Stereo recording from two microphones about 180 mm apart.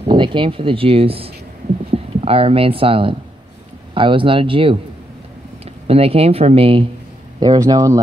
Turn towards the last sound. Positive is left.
turn(degrees=-20)  # may be behind; listen again after turning